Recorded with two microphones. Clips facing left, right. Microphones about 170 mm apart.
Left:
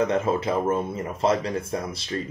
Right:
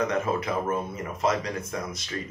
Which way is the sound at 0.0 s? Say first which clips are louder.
Left 4 dB; 30° left (ahead or behind).